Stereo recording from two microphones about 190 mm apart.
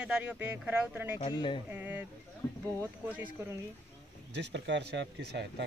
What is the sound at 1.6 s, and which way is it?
Speech, 10° right (ahead or behind).